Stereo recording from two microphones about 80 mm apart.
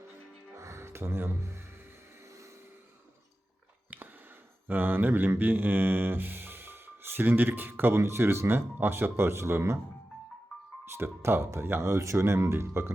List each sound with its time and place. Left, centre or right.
0.5 s music: right
3.8 s a sound: centre
4.7 s music: right
10.9 s speech: right